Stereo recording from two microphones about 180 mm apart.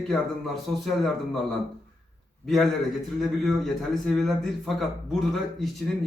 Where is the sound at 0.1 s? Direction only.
Centre (ahead or behind).